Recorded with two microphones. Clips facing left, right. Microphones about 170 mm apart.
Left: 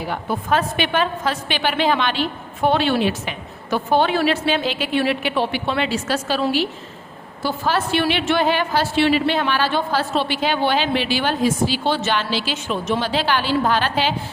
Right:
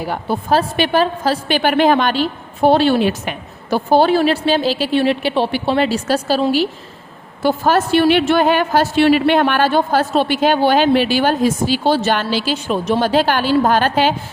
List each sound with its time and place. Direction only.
0.1 s a woman's voice: 35° right (ahead or behind)
7.4 s a woman's voice: 45° right (ahead or behind)